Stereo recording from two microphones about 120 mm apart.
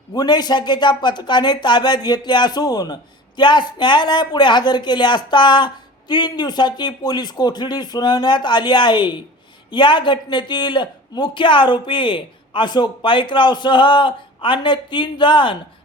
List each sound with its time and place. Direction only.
0.1 s speech: 35° left (ahead or behind)